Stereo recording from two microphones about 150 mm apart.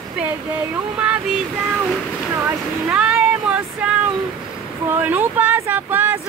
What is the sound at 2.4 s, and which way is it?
Speech, 5° right (ahead or behind).